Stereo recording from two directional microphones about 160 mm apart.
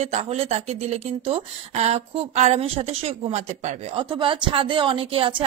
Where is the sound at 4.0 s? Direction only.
30° right (ahead or behind).